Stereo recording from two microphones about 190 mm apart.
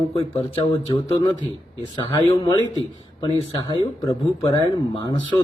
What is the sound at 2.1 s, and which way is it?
Speech, 25° left (ahead or behind).